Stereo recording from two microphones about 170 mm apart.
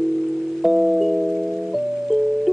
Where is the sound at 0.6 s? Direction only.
Centre (ahead or behind).